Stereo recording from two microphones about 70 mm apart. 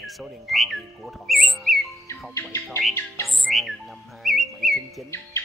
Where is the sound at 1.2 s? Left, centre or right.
Centre.